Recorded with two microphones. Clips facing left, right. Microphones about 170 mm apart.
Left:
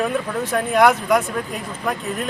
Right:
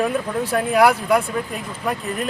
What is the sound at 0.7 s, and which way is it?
Speech, 5° right (ahead or behind).